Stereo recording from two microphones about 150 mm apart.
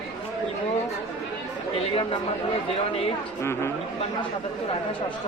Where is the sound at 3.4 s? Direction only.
15° left (ahead or behind).